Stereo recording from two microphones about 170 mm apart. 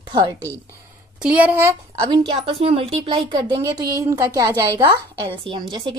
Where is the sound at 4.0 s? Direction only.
20° right (ahead or behind).